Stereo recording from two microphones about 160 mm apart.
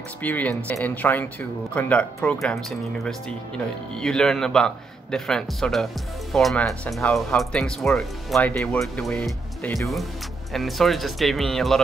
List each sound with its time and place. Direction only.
0.2 s speech: 10° left (ahead or behind)